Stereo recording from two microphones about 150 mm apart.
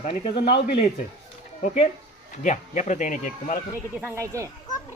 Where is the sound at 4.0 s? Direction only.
15° right (ahead or behind).